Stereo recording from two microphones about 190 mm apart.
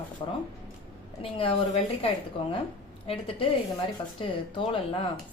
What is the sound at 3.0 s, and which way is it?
A woman's voice, 30° left (ahead or behind).